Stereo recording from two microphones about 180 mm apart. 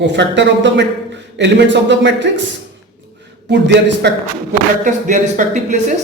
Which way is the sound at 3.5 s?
70° right (ahead or behind).